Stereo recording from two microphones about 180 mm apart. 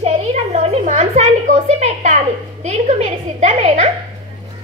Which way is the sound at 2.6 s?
40° right (ahead or behind).